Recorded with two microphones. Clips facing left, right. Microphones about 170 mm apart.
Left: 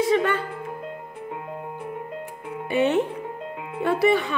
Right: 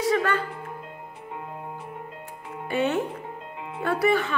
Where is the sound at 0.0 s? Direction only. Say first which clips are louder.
Left 3 dB; 20° left (ahead or behind).